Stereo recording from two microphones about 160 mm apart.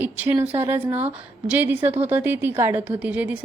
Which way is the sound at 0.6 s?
15° right (ahead or behind).